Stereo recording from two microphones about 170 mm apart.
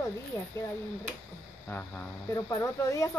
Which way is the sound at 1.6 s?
10° left (ahead or behind).